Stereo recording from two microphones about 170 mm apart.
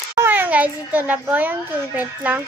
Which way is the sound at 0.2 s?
10° right (ahead or behind).